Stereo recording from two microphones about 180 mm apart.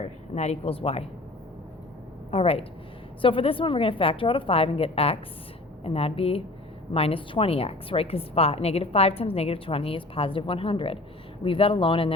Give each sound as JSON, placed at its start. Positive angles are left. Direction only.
{"t": 0.0, "sound": "speech", "side_deg": 35}
{"t": 2.3, "sound": "a woman's voice", "side_deg": 35}